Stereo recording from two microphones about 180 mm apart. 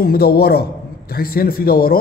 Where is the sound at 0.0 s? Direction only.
55° left (ahead or behind).